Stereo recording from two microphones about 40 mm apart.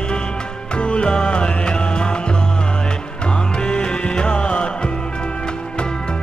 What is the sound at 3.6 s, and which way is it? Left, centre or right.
Music, left.